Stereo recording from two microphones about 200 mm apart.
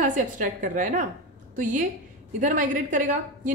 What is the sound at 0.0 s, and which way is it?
A woman's voice, 40° right (ahead or behind).